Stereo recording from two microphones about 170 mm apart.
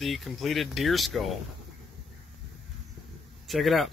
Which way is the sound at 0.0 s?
Centre (ahead or behind).